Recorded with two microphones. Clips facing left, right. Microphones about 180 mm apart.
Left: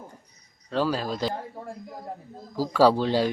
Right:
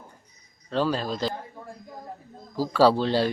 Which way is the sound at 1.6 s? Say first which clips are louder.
Left 4 dB; 30° left (ahead or behind).